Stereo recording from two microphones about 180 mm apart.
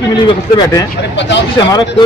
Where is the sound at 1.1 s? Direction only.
80° left.